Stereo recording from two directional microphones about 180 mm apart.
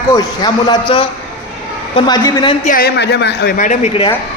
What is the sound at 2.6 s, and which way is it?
Speech, 55° left (ahead or behind).